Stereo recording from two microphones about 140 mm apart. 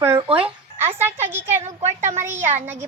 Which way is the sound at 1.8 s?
55° right (ahead or behind).